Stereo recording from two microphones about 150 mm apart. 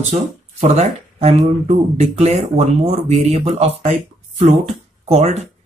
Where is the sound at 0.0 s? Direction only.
50° right (ahead or behind).